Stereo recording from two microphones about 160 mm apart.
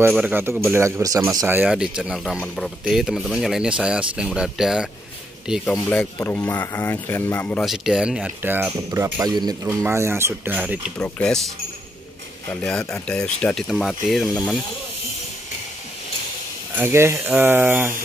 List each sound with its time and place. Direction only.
0.1 s speech: 10° right (ahead or behind)
1.6 s speech: 5° right (ahead or behind); by 7.6 s 10° left (ahead or behind)
7.6 s speech: centre (ahead or behind)
11.0 s speech: 5° left (ahead or behind)
12.4 s speech: 10° left (ahead or behind)
16.7 s speech: 15° right (ahead or behind)